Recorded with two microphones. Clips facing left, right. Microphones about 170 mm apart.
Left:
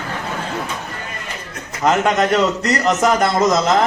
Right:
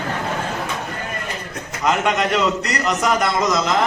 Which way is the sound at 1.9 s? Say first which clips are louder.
Left 3 dB; 45° left (ahead or behind).